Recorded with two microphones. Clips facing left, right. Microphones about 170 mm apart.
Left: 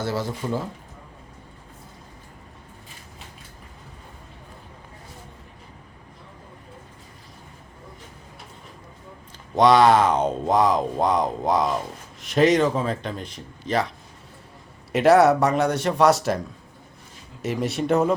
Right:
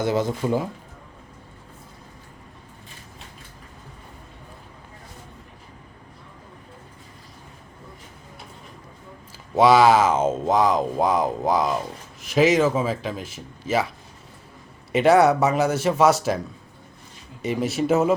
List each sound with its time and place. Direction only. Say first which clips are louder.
0.0 s speech: right 4 dB; 20° right (ahead or behind)
9.6 s speech: right 1 dB; 5° right (ahead or behind)
14.9 s speech: left 1 dB; centre (ahead or behind)
17.4 s speech: right 2 dB; centre (ahead or behind)